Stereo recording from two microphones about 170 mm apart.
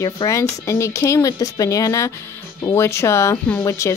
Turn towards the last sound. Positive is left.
turn(degrees=20)  # may be behind; listen again after turning